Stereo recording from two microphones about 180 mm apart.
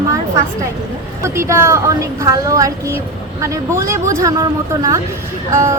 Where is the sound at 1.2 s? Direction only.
15° right (ahead or behind).